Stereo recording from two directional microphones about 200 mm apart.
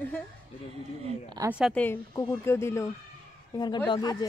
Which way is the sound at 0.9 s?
30° right (ahead or behind).